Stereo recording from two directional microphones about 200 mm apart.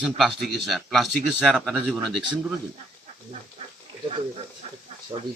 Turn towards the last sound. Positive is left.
turn(degrees=-25)  # may be behind; listen again after turning